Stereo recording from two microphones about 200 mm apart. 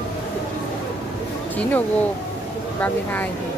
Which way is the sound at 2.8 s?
10° left (ahead or behind).